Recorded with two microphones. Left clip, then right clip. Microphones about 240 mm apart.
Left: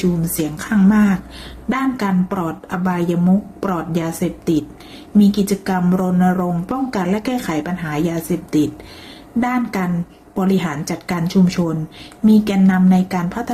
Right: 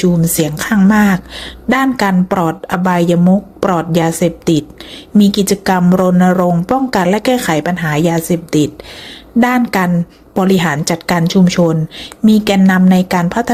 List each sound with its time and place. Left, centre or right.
0.0 s speech: right